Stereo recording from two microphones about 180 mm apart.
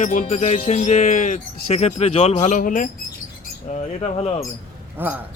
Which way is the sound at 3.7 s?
35° left (ahead or behind).